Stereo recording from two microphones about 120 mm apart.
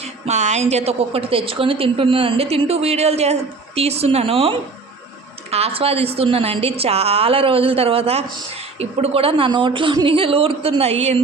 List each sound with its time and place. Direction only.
0.0 s a woman's voice: 75° right (ahead or behind); by 9.5 s 50° right (ahead or behind)
9.5 s a woman's voice: 40° right (ahead or behind); by 11.2 s 60° right (ahead or behind)